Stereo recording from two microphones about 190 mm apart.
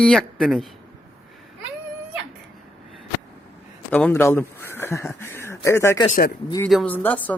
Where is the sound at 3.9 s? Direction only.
10° left (ahead or behind).